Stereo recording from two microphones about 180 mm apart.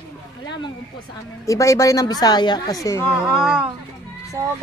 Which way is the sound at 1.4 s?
15° left (ahead or behind).